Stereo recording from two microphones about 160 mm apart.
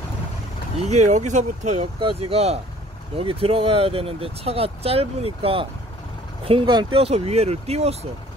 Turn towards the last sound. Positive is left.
turn(degrees=-40)  # may be behind; listen again after turning